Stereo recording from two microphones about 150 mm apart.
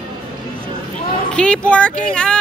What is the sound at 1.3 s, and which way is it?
Speech, 5° left (ahead or behind).